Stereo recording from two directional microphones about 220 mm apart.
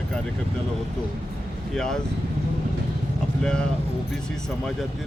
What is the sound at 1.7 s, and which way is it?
Speech, 5° left (ahead or behind).